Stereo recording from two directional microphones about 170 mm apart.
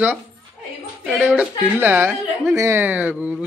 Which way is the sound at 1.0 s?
10° right (ahead or behind).